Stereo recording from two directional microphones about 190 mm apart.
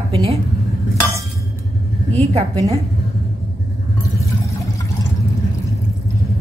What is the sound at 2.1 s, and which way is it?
Speech, 35° right (ahead or behind).